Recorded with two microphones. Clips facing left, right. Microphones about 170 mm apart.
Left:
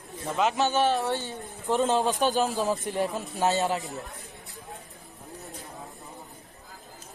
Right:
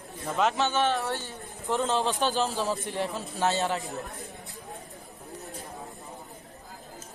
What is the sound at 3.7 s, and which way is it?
Speech, centre (ahead or behind).